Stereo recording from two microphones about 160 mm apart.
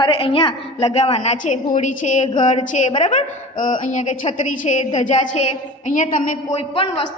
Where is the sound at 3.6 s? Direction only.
50° left (ahead or behind).